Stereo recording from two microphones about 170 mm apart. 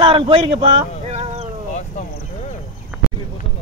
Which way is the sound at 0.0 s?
30° right (ahead or behind).